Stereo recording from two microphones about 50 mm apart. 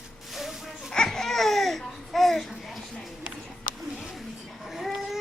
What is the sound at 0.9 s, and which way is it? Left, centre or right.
Babbling, centre.